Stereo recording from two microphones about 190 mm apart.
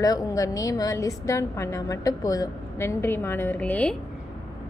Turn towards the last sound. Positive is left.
turn(degrees=5)  # may be behind; listen again after turning